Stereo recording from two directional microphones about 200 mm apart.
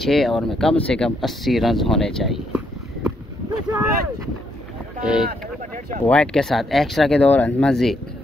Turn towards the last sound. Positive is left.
turn(degrees=0)  # may be behind; listen again after turning